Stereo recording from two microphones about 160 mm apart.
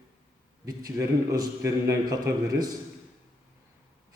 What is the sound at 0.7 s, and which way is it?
A man's voice, 25° right (ahead or behind).